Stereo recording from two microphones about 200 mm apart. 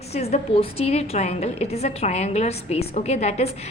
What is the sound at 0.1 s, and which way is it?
A woman's voice, 30° left (ahead or behind).